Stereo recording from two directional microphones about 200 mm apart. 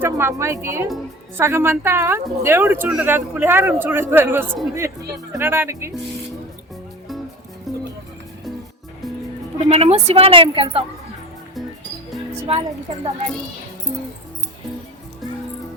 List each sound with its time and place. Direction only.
0.0 s speech: 10° right (ahead or behind)
7.7 s music: centre (ahead or behind)
9.6 s a woman's voice: 30° right (ahead or behind)
12.4 s a woman's voice: 30° right (ahead or behind)